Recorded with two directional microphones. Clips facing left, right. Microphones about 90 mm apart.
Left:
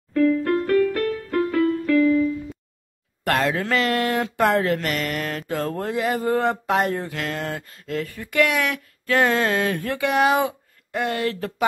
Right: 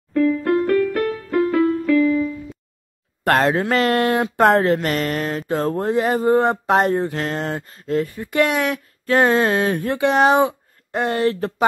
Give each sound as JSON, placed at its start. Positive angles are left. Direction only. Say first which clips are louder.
{"t": 0.1, "sound": "music", "louder": "right 2 dB", "side_deg": -5}
{"t": 3.3, "sound": "speech", "louder": "right 5 dB", "side_deg": -40}